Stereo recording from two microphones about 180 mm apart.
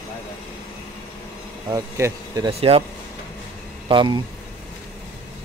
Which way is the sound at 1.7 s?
15° right (ahead or behind).